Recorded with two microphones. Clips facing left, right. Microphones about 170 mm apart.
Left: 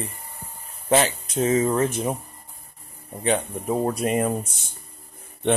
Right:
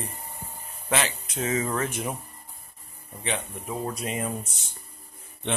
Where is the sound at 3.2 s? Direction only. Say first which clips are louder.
Left 9 dB; 45° left (ahead or behind).